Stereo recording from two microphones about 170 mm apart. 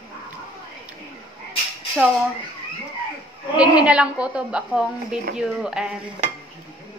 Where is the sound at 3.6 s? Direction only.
5° right (ahead or behind).